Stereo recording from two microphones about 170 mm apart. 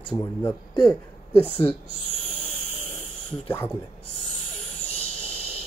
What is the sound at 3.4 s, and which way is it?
Speech, 10° left (ahead or behind).